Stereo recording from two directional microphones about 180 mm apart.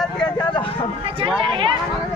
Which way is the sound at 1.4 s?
30° right (ahead or behind).